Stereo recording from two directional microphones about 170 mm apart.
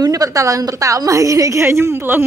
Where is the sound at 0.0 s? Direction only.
20° right (ahead or behind).